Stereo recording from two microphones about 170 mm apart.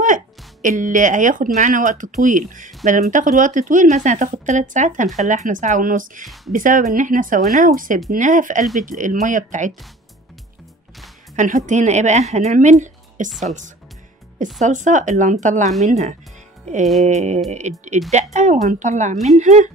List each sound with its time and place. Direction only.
0.0 s speech: 50° right (ahead or behind)
11.3 s speech: 50° right (ahead or behind)